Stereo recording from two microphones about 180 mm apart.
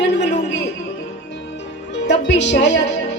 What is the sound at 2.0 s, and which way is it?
Speech, 75° left (ahead or behind).